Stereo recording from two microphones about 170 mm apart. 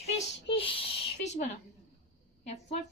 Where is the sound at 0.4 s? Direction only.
30° left (ahead or behind).